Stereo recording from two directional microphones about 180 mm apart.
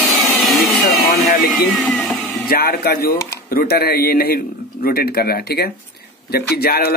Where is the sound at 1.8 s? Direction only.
5° left (ahead or behind).